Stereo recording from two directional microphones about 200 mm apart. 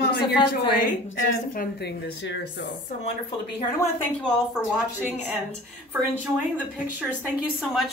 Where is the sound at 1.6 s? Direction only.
55° left (ahead or behind).